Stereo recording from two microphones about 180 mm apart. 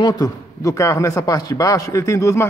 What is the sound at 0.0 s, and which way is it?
A man's voice, 20° left (ahead or behind).